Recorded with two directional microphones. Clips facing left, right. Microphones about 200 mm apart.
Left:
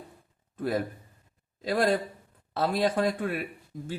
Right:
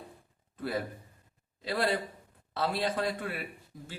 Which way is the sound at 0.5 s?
45° left (ahead or behind).